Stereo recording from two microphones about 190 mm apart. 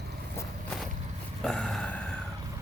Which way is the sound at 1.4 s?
5° left (ahead or behind).